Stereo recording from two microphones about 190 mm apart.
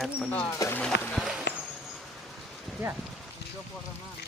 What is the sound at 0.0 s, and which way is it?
Speech, 5° left (ahead or behind).